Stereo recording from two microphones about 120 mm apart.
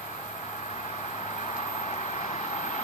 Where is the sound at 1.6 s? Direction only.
70° left (ahead or behind).